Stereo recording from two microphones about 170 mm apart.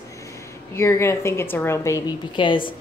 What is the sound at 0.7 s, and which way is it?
A woman's voice, 15° left (ahead or behind).